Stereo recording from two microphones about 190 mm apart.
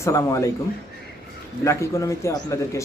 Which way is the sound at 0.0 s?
15° left (ahead or behind).